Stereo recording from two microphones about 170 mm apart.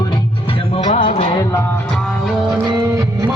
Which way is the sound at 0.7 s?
35° left (ahead or behind).